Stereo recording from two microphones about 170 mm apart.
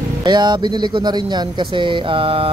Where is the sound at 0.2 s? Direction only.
25° right (ahead or behind).